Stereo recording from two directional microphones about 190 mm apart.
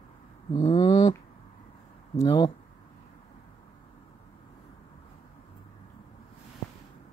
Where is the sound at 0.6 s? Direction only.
25° left (ahead or behind).